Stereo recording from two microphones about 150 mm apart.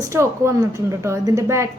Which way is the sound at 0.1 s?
20° right (ahead or behind).